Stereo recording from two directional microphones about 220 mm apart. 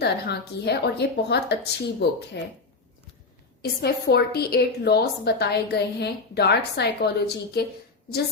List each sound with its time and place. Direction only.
0.0 s a woman's voice: 45° left (ahead or behind)
3.6 s a woman's voice: 45° left (ahead or behind)